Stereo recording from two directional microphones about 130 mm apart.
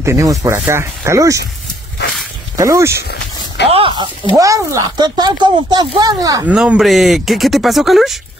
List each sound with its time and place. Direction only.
0.0 s speech: 25° right (ahead or behind)
2.5 s speech: 25° right (ahead or behind)
3.6 s a sound: 50° right (ahead or behind)
3.9 s speech: 35° right (ahead or behind)
6.4 s speech: 10° right (ahead or behind)